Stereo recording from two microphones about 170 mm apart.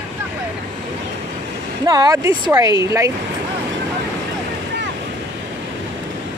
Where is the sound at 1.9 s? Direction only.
20° right (ahead or behind).